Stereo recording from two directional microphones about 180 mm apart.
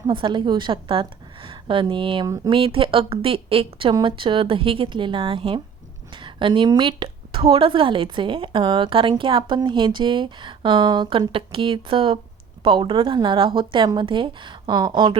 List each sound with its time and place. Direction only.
0.1 s a woman's voice: 25° right (ahead or behind)